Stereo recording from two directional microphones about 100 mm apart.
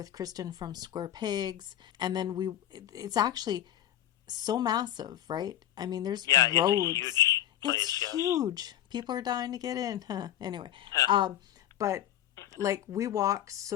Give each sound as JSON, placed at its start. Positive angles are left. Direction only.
{"t": 0.0, "sound": "speech", "side_deg": -40}
{"t": 6.2, "sound": "speech", "side_deg": 35}
{"t": 6.6, "sound": "speech", "side_deg": -40}
{"t": 6.8, "sound": "speech", "side_deg": 35}
{"t": 8.2, "sound": "speech", "side_deg": -35}
{"t": 11.8, "sound": "speech", "side_deg": -30}